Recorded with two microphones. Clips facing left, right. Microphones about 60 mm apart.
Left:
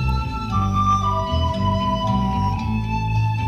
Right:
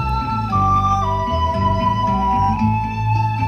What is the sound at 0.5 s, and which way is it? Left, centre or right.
Music, right.